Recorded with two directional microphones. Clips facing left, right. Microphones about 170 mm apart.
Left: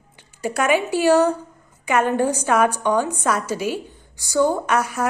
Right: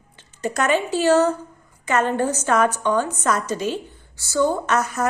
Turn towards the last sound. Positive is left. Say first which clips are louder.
# even
turn(degrees=10)  # may be behind; listen again after turning